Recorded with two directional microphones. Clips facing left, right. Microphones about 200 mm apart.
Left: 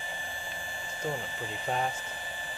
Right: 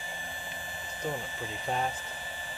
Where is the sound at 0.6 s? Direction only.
15° left (ahead or behind).